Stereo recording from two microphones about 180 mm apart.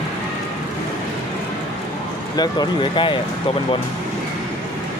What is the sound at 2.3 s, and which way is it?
Speech, 20° left (ahead or behind).